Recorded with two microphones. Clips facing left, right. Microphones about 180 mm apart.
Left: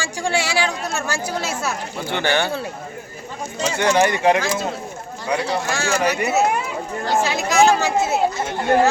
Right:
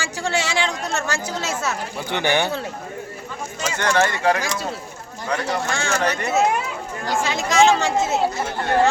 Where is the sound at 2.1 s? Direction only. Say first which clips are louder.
Even; 15° right (ahead or behind).